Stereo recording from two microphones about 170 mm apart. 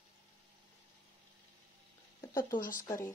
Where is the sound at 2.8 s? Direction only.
20° left (ahead or behind).